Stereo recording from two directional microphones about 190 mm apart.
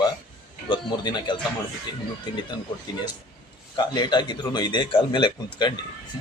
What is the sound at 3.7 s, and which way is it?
Speech, 25° left (ahead or behind).